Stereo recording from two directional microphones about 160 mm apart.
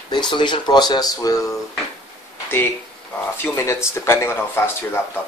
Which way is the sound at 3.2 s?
15° left (ahead or behind).